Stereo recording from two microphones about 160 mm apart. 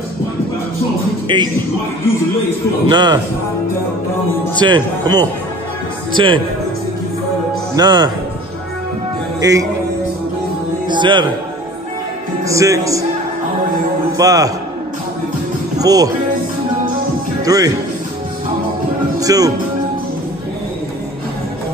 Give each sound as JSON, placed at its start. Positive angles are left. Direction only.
{"t": 1.3, "sound": "speech", "side_deg": -30}
{"t": 2.9, "sound": "speech", "side_deg": -25}
{"t": 4.6, "sound": "speech", "side_deg": -30}
{"t": 7.7, "sound": "speech", "side_deg": -25}
{"t": 9.4, "sound": "speech", "side_deg": -20}
{"t": 10.9, "sound": "a man's voice", "side_deg": -30}
{"t": 12.4, "sound": "speech", "side_deg": -20}
{"t": 14.1, "sound": "speech", "side_deg": -20}
{"t": 15.8, "sound": "speech", "side_deg": -20}
{"t": 17.5, "sound": "speech", "side_deg": -20}
{"t": 19.1, "sound": "speech", "side_deg": -20}